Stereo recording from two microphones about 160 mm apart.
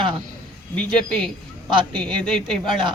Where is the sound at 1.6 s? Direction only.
30° right (ahead or behind).